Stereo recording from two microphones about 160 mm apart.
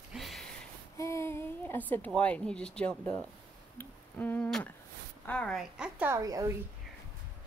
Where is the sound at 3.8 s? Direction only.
10° left (ahead or behind).